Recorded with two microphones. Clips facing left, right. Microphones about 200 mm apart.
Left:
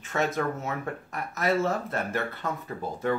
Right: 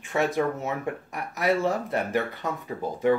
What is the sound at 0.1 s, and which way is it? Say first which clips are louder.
Speech: right 3 dB; 15° right (ahead or behind).